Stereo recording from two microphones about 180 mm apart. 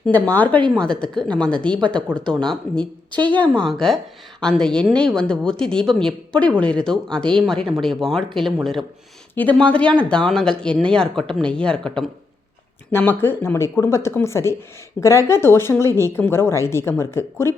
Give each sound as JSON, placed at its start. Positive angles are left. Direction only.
{"t": 0.0, "sound": "a woman's voice", "side_deg": 10}
{"t": 3.1, "sound": "a woman's voice", "side_deg": -25}
{"t": 3.3, "sound": "a woman's voice", "side_deg": 5}